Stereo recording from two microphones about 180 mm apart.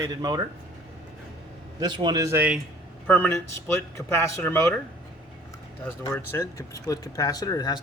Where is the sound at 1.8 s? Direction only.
25° right (ahead or behind).